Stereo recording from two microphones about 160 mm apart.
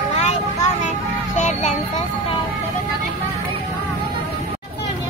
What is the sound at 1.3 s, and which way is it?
Child singing, 45° left (ahead or behind).